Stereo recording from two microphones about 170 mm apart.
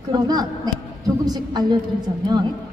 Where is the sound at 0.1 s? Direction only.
25° right (ahead or behind).